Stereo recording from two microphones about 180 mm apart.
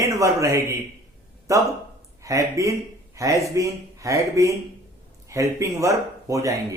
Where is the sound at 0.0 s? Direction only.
15° right (ahead or behind).